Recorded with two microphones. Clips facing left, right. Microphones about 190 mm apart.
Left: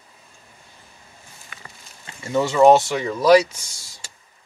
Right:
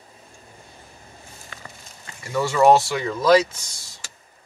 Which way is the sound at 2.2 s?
20° left (ahead or behind).